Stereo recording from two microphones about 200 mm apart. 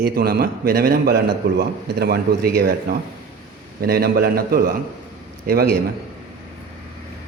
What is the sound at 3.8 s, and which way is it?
Speech, 50° right (ahead or behind).